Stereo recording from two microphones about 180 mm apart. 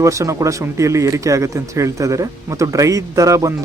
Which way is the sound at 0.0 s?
15° right (ahead or behind).